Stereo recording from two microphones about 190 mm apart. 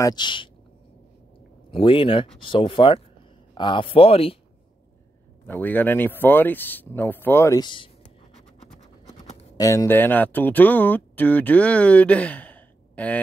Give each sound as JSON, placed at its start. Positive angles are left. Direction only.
{"t": 0.0, "sound": "speech", "side_deg": 25}
{"t": 1.7, "sound": "speech", "side_deg": 25}
{"t": 5.5, "sound": "speech", "side_deg": 10}
{"t": 9.1, "sound": "speech", "side_deg": 25}